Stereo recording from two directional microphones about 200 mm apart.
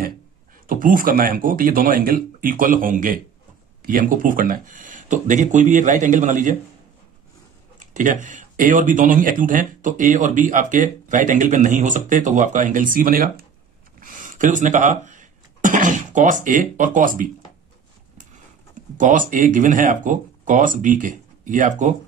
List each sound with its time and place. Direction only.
0.7 s speech: 45° right (ahead or behind)
7.8 s speech: 40° right (ahead or behind)
13.9 s a sound: 40° right (ahead or behind)
18.9 s speech: 40° right (ahead or behind)